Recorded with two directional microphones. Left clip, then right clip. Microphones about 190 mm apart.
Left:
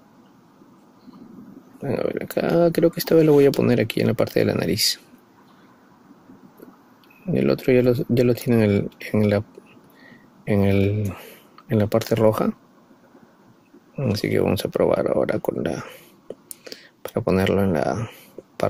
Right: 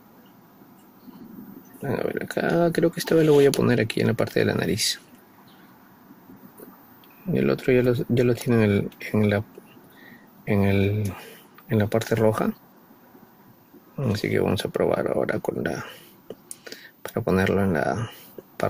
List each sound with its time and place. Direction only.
1.8 s speech: 20° left (ahead or behind)
7.3 s speech: 20° left (ahead or behind)
10.4 s speech: 25° left (ahead or behind)
13.9 s speech: 25° left (ahead or behind)
18.4 s a sound: 20° left (ahead or behind)